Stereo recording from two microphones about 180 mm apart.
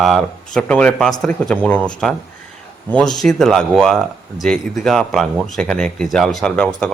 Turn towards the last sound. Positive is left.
turn(degrees=5)  # may be behind; listen again after turning